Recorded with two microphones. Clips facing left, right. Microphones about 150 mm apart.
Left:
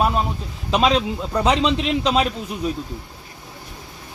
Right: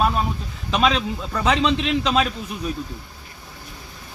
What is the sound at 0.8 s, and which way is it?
Speech, 25° left (ahead or behind).